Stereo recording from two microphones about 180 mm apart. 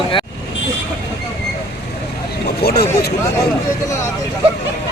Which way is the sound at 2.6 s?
60° left (ahead or behind).